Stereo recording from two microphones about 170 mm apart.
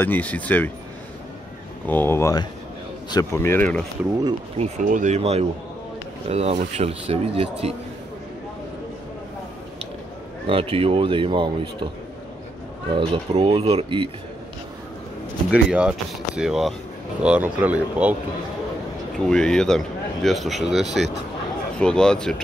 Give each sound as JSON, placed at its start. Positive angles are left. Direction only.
{"t": 0.0, "sound": "speech", "side_deg": 10}
{"t": 1.9, "sound": "speech", "side_deg": 10}
{"t": 4.6, "sound": "a man's voice", "side_deg": -45}
{"t": 10.4, "sound": "a man's voice", "side_deg": -30}
{"t": 12.9, "sound": "a man's voice", "side_deg": -30}
{"t": 15.5, "sound": "speech", "side_deg": -5}
{"t": 19.1, "sound": "speech", "side_deg": 5}